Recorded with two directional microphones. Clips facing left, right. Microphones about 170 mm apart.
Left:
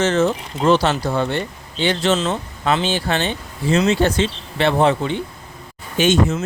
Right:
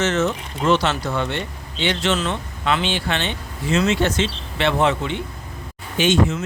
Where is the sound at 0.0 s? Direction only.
35° left (ahead or behind).